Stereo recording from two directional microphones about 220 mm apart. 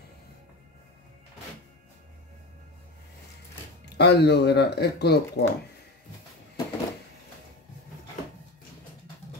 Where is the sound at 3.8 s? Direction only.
50° left (ahead or behind).